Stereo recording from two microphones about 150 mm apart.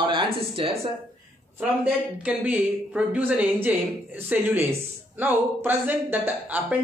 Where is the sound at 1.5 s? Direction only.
10° right (ahead or behind).